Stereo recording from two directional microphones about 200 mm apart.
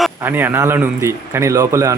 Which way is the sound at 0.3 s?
10° right (ahead or behind).